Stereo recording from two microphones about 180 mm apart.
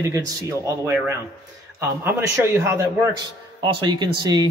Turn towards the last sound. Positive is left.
turn(degrees=-25)  # may be behind; listen again after turning